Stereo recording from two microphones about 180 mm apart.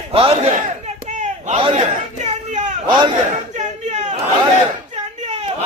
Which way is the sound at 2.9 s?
25° right (ahead or behind).